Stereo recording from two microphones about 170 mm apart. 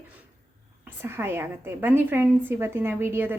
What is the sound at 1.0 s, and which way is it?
A woman's voice, 15° right (ahead or behind).